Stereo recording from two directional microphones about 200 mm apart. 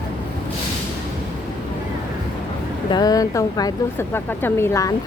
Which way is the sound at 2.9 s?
20° left (ahead or behind).